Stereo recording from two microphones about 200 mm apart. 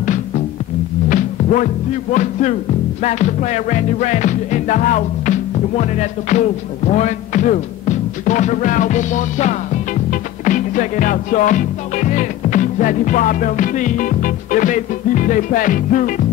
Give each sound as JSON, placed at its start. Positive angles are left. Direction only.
{"t": 1.0, "sound": "music", "side_deg": 40}
{"t": 3.0, "sound": "music", "side_deg": 35}